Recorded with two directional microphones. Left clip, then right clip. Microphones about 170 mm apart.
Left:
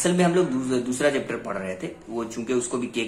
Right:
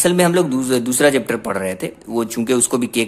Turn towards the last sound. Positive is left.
turn(degrees=-70)  # may be behind; listen again after turning